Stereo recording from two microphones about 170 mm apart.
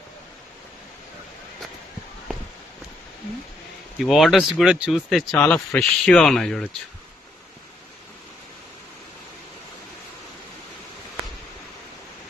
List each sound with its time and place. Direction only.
3.9 s speech: centre (ahead or behind)